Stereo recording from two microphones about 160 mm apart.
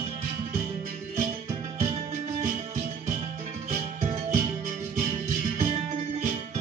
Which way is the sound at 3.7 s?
50° right (ahead or behind).